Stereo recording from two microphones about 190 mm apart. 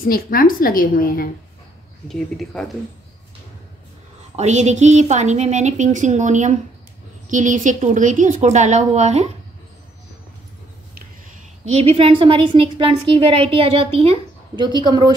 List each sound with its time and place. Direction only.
0.0 s a woman's voice: 50° left (ahead or behind)
2.0 s speech: centre (ahead or behind)
4.4 s a woman's voice: 35° right (ahead or behind)
11.6 s a woman's voice: 35° right (ahead or behind)